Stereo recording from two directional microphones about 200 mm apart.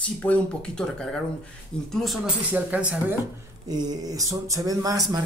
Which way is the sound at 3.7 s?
20° right (ahead or behind).